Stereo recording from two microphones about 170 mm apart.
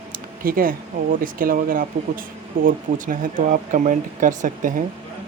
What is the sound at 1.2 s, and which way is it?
Speech, 55° right (ahead or behind).